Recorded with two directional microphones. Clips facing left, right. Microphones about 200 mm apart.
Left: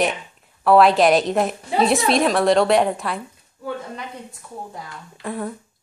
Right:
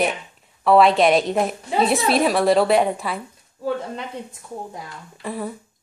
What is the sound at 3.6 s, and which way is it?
Speech, 25° right (ahead or behind).